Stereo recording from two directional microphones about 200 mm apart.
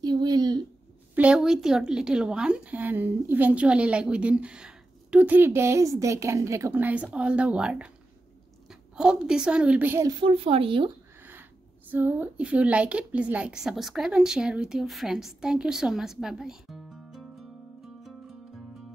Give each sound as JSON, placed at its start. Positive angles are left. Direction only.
{"t": 0.0, "sound": "a sound", "side_deg": -20}
{"t": 1.1, "sound": "a woman's voice", "side_deg": -5}
{"t": 8.9, "sound": "a woman's voice", "side_deg": -5}
{"t": 10.2, "sound": "speech", "side_deg": -30}
{"t": 11.9, "sound": "a woman's voice", "side_deg": -10}